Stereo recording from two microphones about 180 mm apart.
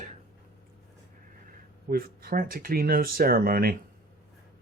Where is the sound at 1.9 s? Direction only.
55° right (ahead or behind).